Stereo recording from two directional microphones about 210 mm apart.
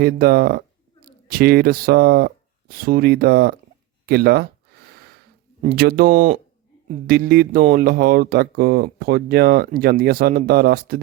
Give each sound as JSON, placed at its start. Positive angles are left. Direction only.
{"t": 0.0, "sound": "speech", "side_deg": -45}
{"t": 4.9, "sound": "a sound", "side_deg": -50}
{"t": 5.6, "sound": "speech", "side_deg": -45}